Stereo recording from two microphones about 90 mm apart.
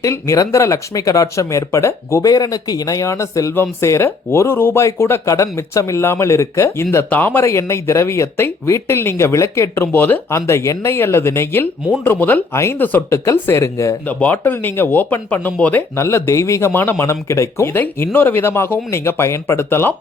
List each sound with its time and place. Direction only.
0.0 s speech: 35° left (ahead or behind)
7.1 s speech: 20° left (ahead or behind)
7.4 s speech: 30° left (ahead or behind)
14.1 s speech: 20° left (ahead or behind)
16.0 s speech: 30° left (ahead or behind)